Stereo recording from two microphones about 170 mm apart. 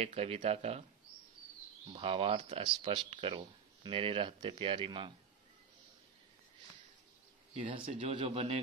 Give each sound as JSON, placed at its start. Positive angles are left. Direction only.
{"t": 0.0, "sound": "speech", "side_deg": -35}
{"t": 1.9, "sound": "speech", "side_deg": -35}
{"t": 7.9, "sound": "speech", "side_deg": -35}